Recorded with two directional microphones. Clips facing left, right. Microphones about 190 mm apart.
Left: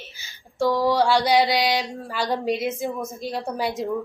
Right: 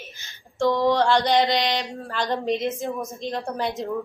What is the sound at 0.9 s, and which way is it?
A woman's voice, 5° left (ahead or behind).